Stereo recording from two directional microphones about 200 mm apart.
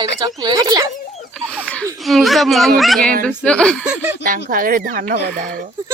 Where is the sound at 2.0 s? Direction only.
Centre (ahead or behind).